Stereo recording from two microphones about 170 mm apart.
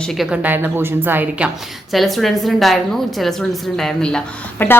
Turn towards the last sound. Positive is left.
turn(degrees=10)  # may be behind; listen again after turning